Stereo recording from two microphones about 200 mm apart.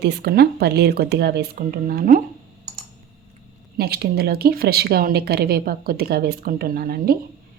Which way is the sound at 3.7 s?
50° right (ahead or behind).